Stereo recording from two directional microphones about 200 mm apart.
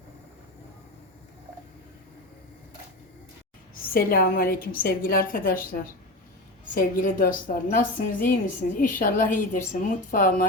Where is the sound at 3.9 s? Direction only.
45° left (ahead or behind).